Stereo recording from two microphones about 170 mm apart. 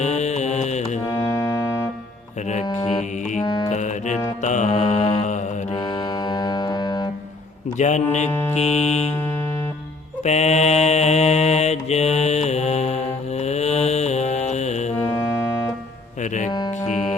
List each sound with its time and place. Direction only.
0.0 s mantra: 40° left (ahead or behind)
1.0 s music: 15° left (ahead or behind)
3.4 s music: 20° left (ahead or behind)
3.7 s music: 45° left (ahead or behind)
4.4 s mantra: 45° left (ahead or behind)
6.2 s music: 25° left (ahead or behind)
7.8 s speech: 45° left (ahead or behind)
8.3 s mantra: 15° left (ahead or behind)
8.5 s music: 40° left (ahead or behind)
10.2 s mantra: 40° left (ahead or behind)
14.9 s music: 15° left (ahead or behind)
16.8 s music: 45° left (ahead or behind)